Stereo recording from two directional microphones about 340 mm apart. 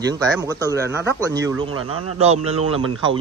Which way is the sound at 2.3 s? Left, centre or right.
Right.